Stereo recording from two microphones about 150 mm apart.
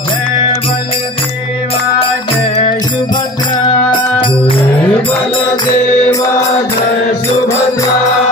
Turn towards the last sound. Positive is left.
turn(degrees=20)  # may be behind; listen again after turning